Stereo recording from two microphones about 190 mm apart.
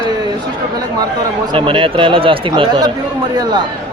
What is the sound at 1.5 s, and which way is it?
Speech, 30° right (ahead or behind).